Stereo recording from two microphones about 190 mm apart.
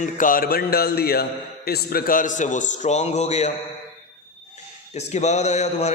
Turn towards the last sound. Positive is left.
turn(degrees=35)  # may be behind; listen again after turning